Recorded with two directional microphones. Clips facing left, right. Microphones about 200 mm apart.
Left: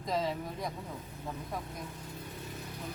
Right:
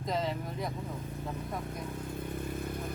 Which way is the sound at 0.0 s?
Centre (ahead or behind).